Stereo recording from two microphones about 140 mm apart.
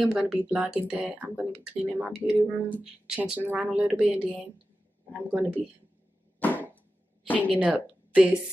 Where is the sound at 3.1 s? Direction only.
5° right (ahead or behind).